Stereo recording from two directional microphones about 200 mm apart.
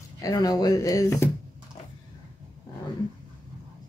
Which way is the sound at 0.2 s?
20° left (ahead or behind).